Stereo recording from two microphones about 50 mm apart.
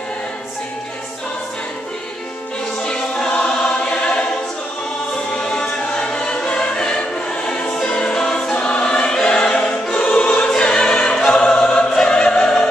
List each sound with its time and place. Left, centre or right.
2.8 s music: centre
3.8 s choir: left
5.4 s choir: centre
9.1 s music: centre